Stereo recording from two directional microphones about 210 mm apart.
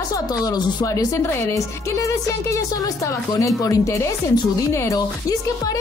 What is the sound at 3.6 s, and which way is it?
Speech, 15° left (ahead or behind).